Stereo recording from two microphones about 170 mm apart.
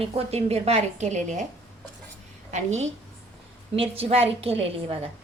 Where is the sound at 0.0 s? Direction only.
35° right (ahead or behind).